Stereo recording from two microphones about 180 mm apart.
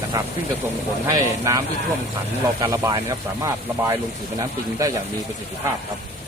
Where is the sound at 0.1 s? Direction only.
20° right (ahead or behind).